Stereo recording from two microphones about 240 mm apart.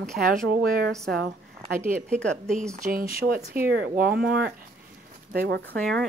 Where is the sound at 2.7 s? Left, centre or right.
Right.